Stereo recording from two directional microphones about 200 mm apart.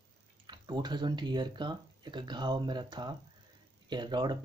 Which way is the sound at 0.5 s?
20° right (ahead or behind).